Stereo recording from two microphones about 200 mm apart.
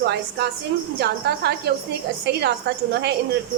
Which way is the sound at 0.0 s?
55° right (ahead or behind).